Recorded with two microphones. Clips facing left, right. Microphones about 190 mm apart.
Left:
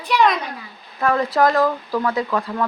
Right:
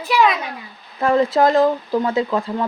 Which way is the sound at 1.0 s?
25° right (ahead or behind).